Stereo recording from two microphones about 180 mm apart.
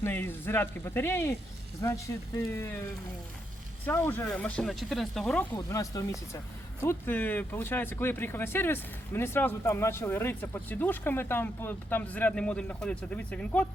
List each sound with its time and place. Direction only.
0.0 s speech: 10° left (ahead or behind)
5.5 s speech: 20° left (ahead or behind)